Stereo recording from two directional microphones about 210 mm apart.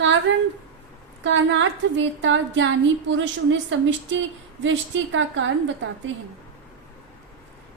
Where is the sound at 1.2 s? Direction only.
60° right (ahead or behind).